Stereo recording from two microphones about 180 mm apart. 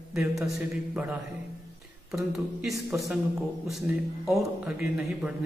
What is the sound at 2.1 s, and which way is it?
A man's voice, centre (ahead or behind).